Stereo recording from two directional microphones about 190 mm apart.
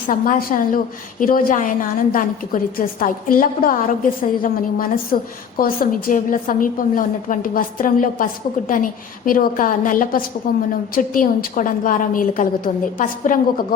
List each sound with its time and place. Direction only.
0.1 s a woman's voice: 45° left (ahead or behind)